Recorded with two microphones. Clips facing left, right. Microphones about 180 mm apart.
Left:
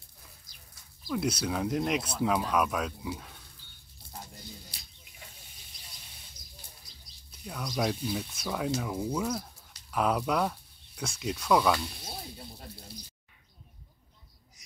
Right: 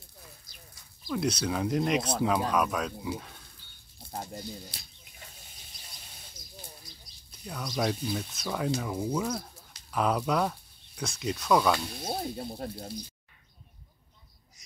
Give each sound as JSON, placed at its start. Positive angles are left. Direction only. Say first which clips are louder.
{"t": 1.0, "sound": "speech", "louder": "right 1 dB", "side_deg": 5}
{"t": 4.1, "sound": "a sound", "louder": "right 8 dB", "side_deg": -55}
{"t": 7.2, "sound": "speech", "louder": "even", "side_deg": 5}
{"t": 12.0, "sound": "speech", "louder": "right 10 dB", "side_deg": -50}